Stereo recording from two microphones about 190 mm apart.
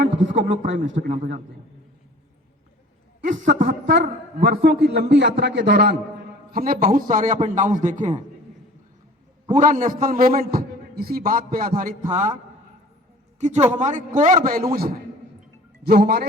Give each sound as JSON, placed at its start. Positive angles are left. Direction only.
{"t": 0.3, "sound": "a man's voice", "side_deg": -45}
{"t": 3.2, "sound": "a man's voice", "side_deg": -40}
{"t": 4.4, "sound": "a man's voice", "side_deg": -55}
{"t": 6.5, "sound": "a man's voice", "side_deg": -50}
{"t": 9.6, "sound": "a man's voice", "side_deg": -45}
{"t": 13.4, "sound": "a man's voice", "side_deg": -35}